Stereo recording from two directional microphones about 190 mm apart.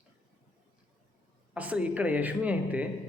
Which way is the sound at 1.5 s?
5° right (ahead or behind).